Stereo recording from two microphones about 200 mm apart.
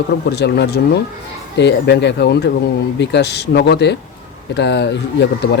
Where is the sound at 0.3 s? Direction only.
55° left (ahead or behind).